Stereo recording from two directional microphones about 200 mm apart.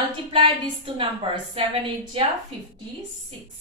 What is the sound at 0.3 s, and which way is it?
A woman's voice, 25° right (ahead or behind).